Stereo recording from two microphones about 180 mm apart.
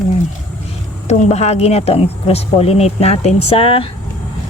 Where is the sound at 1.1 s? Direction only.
40° left (ahead or behind).